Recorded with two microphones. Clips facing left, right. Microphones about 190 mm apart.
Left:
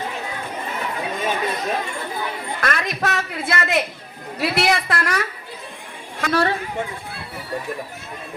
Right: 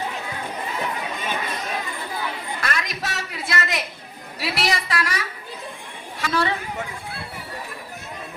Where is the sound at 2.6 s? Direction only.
55° left (ahead or behind).